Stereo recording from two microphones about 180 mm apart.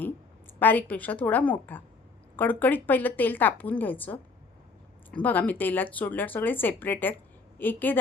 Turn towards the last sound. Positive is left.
turn(degrees=10)  # may be behind; listen again after turning